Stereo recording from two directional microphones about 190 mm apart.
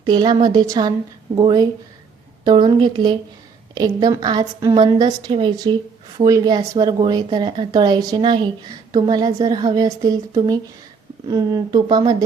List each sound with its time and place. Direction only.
0.0 s speech: 25° right (ahead or behind)